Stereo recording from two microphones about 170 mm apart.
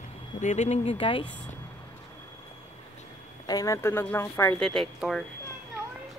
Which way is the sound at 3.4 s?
20° left (ahead or behind).